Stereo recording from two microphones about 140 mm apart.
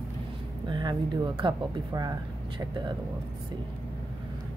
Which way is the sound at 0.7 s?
30° right (ahead or behind).